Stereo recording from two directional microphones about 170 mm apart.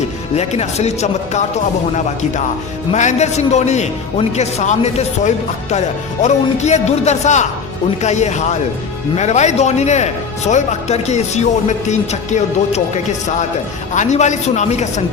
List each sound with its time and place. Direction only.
0.3 s a man's voice: 40° left (ahead or behind)
2.9 s a man's voice: 45° left (ahead or behind)